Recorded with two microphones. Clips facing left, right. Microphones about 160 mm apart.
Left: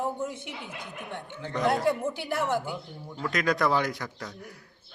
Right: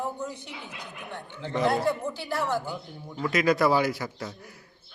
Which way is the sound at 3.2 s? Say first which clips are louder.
Right 3 dB; 5° right (ahead or behind).